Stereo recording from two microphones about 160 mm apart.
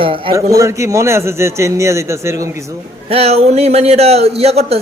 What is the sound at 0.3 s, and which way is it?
A man's voice, 20° right (ahead or behind).